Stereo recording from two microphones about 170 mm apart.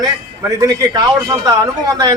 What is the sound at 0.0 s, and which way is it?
A man's voice, 20° right (ahead or behind).